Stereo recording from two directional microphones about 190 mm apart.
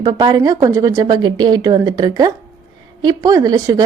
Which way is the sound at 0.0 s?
25° right (ahead or behind).